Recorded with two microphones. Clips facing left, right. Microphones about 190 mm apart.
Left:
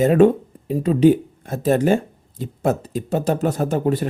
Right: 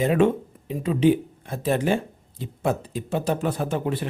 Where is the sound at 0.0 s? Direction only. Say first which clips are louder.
Left 6 dB; 40° left (ahead or behind).